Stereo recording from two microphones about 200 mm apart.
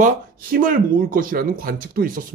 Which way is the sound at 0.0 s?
45° right (ahead or behind).